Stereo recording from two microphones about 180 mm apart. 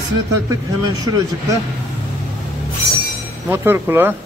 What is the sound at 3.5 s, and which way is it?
Speech, 10° right (ahead or behind).